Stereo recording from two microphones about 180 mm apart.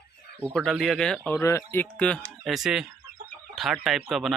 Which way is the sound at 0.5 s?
Centre (ahead or behind).